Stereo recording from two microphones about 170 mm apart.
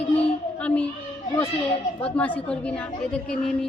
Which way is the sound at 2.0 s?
10° left (ahead or behind).